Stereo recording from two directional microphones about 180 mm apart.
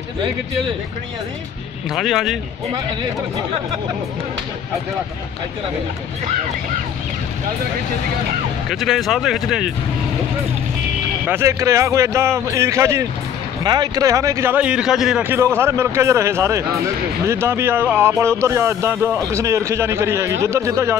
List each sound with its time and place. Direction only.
2.0 s speech: centre (ahead or behind)
8.6 s speech: centre (ahead or behind)
11.2 s a man's voice: 15° right (ahead or behind)